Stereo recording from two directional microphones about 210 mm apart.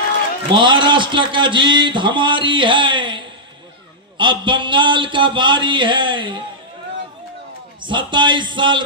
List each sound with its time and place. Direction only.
0.6 s a man's voice: 20° right (ahead or behind)
7.8 s a man's voice: 20° right (ahead or behind)